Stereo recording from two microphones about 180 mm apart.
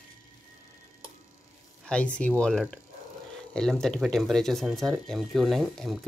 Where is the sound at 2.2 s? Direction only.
5° left (ahead or behind).